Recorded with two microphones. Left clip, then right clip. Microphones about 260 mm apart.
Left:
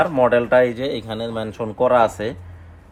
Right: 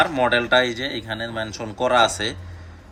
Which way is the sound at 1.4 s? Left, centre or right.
Left.